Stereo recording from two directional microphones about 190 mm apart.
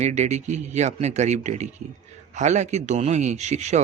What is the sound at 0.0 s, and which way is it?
A man's voice, 35° right (ahead or behind).